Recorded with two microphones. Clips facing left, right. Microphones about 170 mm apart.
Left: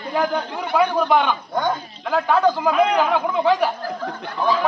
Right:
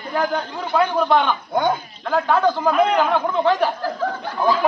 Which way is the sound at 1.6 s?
10° right (ahead or behind).